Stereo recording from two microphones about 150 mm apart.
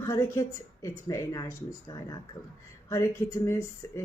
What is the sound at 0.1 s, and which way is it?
Speech, 20° left (ahead or behind).